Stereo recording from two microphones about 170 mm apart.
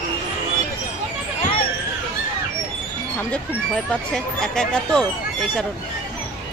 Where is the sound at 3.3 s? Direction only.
5° left (ahead or behind).